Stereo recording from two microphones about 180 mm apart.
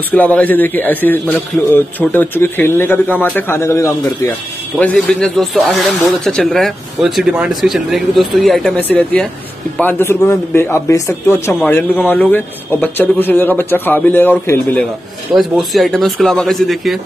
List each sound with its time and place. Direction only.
0.1 s a man's voice: 10° left (ahead or behind)
15.3 s speech: centre (ahead or behind)